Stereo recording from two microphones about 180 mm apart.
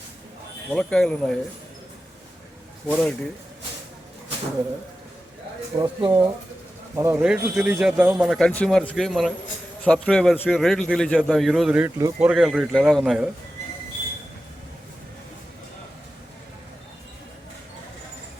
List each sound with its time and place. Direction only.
0.7 s a man's voice: 5° left (ahead or behind)
2.8 s speech: 5° left (ahead or behind)
5.8 s speech: 25° right (ahead or behind)
6.9 s a man's voice: 15° right (ahead or behind)
11.9 s speech: 15° right (ahead or behind)
12.3 s a man's voice: 5° right (ahead or behind)